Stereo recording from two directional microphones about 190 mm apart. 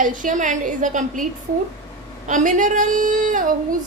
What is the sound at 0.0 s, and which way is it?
A woman's voice, 45° right (ahead or behind).